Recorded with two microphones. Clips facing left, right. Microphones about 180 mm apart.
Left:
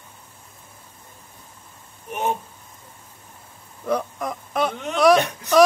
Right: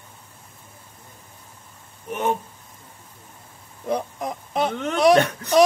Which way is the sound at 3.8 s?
25° right (ahead or behind).